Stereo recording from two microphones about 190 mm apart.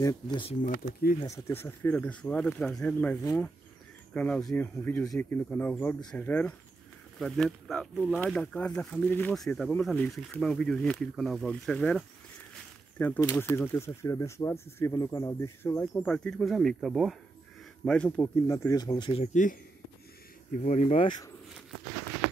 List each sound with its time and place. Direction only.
0.0 s speech: 25° left (ahead or behind)
1.2 s speech: 15° left (ahead or behind)
13.0 s speech: 10° left (ahead or behind); by 19.5 s 40° left (ahead or behind)
20.5 s speech: 40° left (ahead or behind)